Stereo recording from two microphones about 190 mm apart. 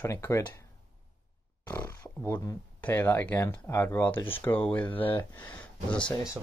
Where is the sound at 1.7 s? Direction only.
15° left (ahead or behind).